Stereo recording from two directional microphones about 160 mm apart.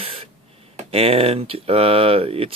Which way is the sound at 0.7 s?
40° right (ahead or behind).